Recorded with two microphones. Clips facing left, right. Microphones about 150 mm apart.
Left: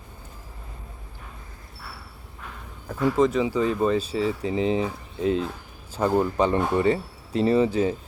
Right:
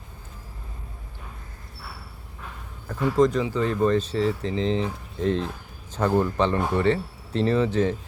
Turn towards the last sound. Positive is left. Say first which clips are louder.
# left 1 dB
turn(degrees=10)  # may be behind; listen again after turning